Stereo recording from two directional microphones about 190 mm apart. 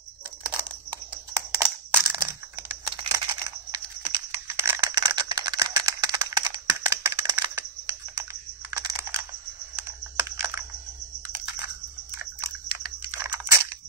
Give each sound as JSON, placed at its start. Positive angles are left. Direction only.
{"t": 1.6, "sound": "crushing", "side_deg": -10}
{"t": 2.2, "sound": "computer keyboard", "side_deg": -10}
{"t": 3.4, "sound": "typing", "side_deg": -20}
{"t": 11.2, "sound": "a sound", "side_deg": -15}
{"t": 12.8, "sound": "computer keyboard", "side_deg": -10}